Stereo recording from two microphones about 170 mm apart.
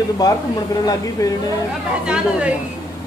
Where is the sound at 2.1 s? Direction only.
5° right (ahead or behind).